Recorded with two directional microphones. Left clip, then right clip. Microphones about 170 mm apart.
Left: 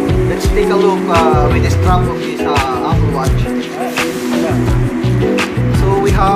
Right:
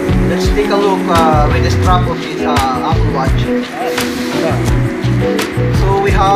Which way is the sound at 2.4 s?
10° left (ahead or behind).